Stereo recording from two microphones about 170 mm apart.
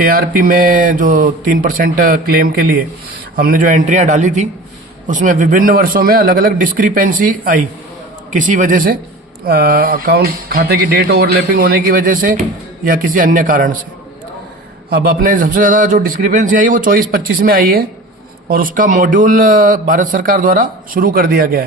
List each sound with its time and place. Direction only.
0.0 s a man's voice: 60° right (ahead or behind)
14.8 s a man's voice: 60° right (ahead or behind)